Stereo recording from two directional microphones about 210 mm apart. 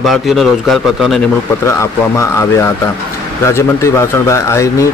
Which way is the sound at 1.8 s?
15° left (ahead or behind).